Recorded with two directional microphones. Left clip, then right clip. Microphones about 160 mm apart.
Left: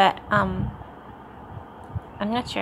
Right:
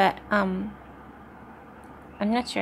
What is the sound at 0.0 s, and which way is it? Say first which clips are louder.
Speech: left 3 dB; 10° right (ahead or behind).